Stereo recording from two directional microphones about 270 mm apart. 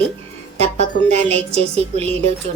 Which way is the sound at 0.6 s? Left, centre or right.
Right.